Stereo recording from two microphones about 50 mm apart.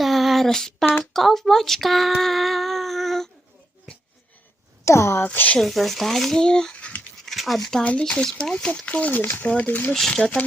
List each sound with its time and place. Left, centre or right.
0.0 s a sound: centre
1.1 s speech: centre
4.9 s speech: left
5.2 s speech: left
5.5 s speech: centre
6.7 s a sound: left
7.3 s speech: centre
8.9 s speech: left
9.9 s speech: centre